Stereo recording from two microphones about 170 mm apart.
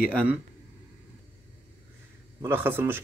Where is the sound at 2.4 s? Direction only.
10° right (ahead or behind).